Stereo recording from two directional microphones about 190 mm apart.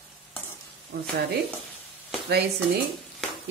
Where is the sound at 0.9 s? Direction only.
55° right (ahead or behind).